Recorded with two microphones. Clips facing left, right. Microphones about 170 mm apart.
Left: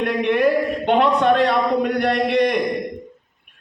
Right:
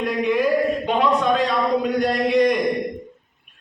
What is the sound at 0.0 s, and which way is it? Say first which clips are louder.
A man's voice: left 2 dB; 70° left (ahead or behind).